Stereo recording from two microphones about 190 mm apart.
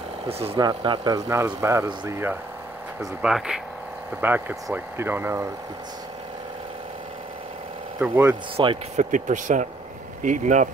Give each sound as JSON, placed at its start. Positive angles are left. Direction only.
{"t": 0.3, "sound": "speech", "side_deg": -30}
{"t": 3.0, "sound": "speech", "side_deg": 0}
{"t": 8.0, "sound": "speech", "side_deg": -10}
{"t": 8.5, "sound": "speech", "side_deg": -30}
{"t": 9.1, "sound": "speech", "side_deg": -40}